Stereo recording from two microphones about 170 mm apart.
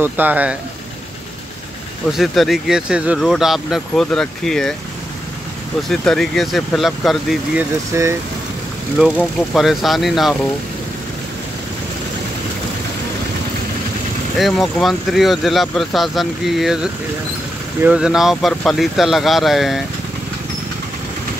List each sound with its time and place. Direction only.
0.0 s speech: 10° right (ahead or behind)
2.1 s speech: centre (ahead or behind)
5.9 s speech: centre (ahead or behind)
7.9 s speech: 15° right (ahead or behind)
8.9 s speech: centre (ahead or behind)
14.4 s speech: centre (ahead or behind)